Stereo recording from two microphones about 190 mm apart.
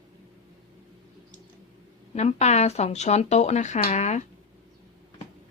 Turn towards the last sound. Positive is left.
turn(degrees=35)  # may be behind; listen again after turning